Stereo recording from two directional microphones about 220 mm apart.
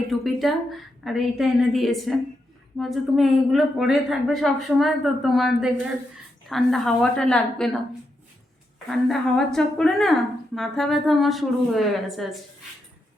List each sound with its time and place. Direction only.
0.1 s speech: centre (ahead or behind)
8.9 s speech: centre (ahead or behind)